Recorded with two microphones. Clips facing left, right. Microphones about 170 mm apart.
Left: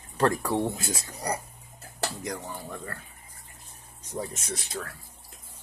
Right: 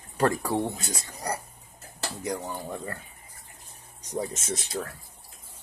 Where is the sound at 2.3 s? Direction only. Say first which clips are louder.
Right 4 dB; 15° right (ahead or behind).